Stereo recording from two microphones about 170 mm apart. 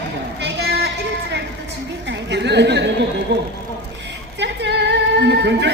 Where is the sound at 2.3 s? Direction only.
90° right.